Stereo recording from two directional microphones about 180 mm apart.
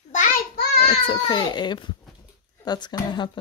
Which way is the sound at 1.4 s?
25° left (ahead or behind).